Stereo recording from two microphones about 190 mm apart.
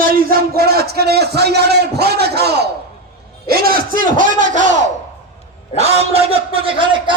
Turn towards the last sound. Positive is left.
turn(degrees=-25)  # may be behind; listen again after turning